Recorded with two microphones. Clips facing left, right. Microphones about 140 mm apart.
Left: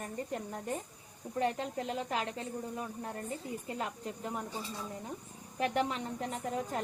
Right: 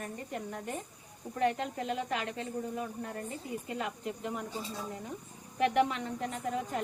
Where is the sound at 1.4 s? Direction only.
35° left (ahead or behind).